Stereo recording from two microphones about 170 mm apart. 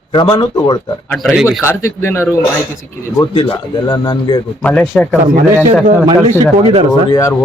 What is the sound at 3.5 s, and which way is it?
Speech, 25° left (ahead or behind).